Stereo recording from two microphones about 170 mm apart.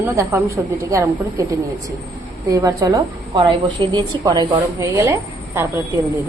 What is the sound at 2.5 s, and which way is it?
A woman's voice, 20° right (ahead or behind).